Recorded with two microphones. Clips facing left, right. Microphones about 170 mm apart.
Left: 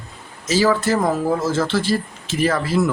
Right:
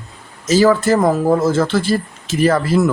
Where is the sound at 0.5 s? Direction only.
50° right (ahead or behind).